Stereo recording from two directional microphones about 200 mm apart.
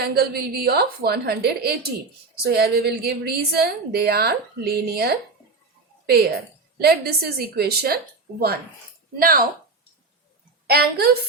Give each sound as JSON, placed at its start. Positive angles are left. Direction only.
{"t": 0.0, "sound": "a woman's voice", "side_deg": -50}
{"t": 6.7, "sound": "a woman's voice", "side_deg": -50}
{"t": 10.7, "sound": "a woman's voice", "side_deg": -50}